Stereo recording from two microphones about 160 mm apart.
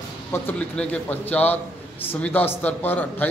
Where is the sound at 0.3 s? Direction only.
15° left (ahead or behind).